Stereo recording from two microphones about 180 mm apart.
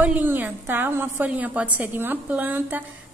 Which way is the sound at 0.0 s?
10° right (ahead or behind).